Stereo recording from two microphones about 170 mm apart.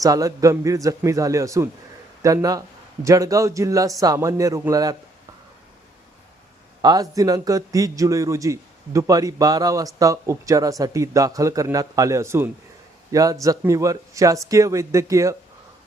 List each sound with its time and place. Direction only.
0.0 s a man's voice: 20° right (ahead or behind)
6.8 s a man's voice: 20° right (ahead or behind)